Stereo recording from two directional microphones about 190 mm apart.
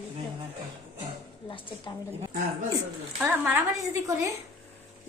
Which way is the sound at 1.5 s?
25° left (ahead or behind).